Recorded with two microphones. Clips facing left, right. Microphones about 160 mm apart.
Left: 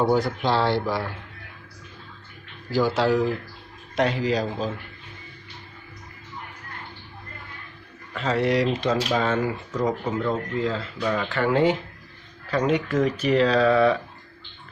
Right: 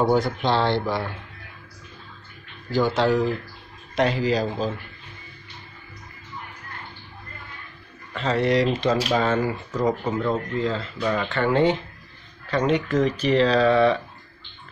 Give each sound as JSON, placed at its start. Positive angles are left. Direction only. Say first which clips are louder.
{"t": 0.0, "sound": "speech", "louder": "right 1 dB", "side_deg": 0}
{"t": 2.7, "sound": "speech", "louder": "right 1 dB", "side_deg": 5}
{"t": 8.1, "sound": "speech", "louder": "right 1 dB", "side_deg": 5}